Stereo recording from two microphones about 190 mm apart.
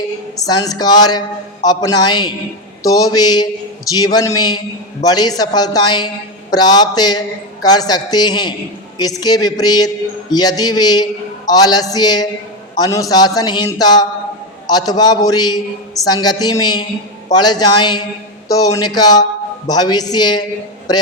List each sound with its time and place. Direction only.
0.4 s a man's voice: 20° left (ahead or behind)